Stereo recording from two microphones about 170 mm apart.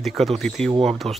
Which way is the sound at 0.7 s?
35° right (ahead or behind).